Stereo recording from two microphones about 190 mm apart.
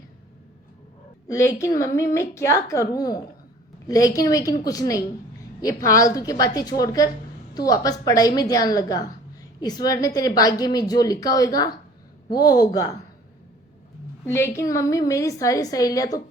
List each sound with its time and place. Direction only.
1.3 s a woman's voice: 15° left (ahead or behind)
14.3 s a woman's voice: 15° left (ahead or behind)